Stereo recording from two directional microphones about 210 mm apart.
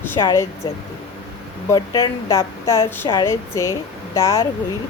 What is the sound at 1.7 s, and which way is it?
Speech, 20° left (ahead or behind).